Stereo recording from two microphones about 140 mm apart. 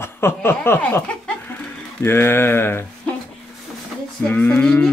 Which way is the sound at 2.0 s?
15° left (ahead or behind).